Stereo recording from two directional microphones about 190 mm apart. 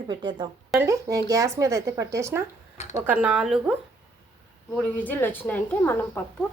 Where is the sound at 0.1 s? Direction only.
25° right (ahead or behind); by 3.8 s 5° right (ahead or behind).